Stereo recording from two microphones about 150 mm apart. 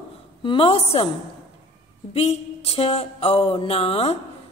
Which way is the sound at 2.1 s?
40° left (ahead or behind).